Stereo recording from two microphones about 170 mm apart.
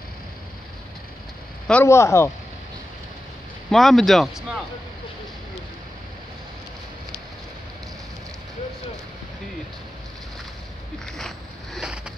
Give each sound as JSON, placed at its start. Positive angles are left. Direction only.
{"t": 1.7, "sound": "a man's voice", "side_deg": 15}
{"t": 3.7, "sound": "speech", "side_deg": 0}
{"t": 11.1, "sound": "a sound", "side_deg": 0}